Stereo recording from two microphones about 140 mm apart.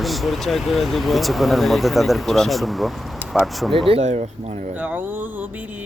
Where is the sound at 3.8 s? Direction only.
50° right (ahead or behind).